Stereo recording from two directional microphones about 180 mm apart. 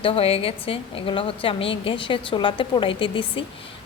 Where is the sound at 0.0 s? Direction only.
30° left (ahead or behind).